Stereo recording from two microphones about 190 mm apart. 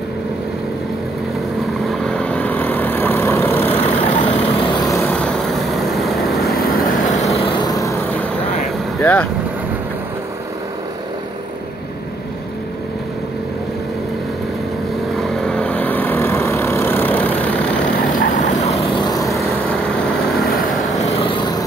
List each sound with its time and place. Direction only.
2.0 s vehicle: 5° left (ahead or behind)
4.0 s vehicle: 30° left (ahead or behind)
5.0 s vehicle: 5° left (ahead or behind)
6.6 s vehicle: 45° left (ahead or behind)
7.3 s vehicle: 25° left (ahead or behind); by 8.3 s 10° left (ahead or behind)
9.0 s speech: 10° left (ahead or behind)
15.1 s vehicle: 5° left (ahead or behind)
18.1 s vehicle: 45° left (ahead or behind)
18.9 s vehicle: 20° left (ahead or behind)
21.2 s vehicle: 25° left (ahead or behind)